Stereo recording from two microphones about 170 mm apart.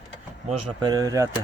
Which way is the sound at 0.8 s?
20° right (ahead or behind).